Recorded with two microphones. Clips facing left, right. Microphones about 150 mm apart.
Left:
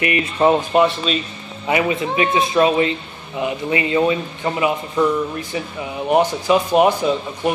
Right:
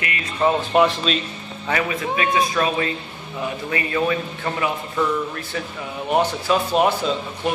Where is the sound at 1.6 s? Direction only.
20° left (ahead or behind).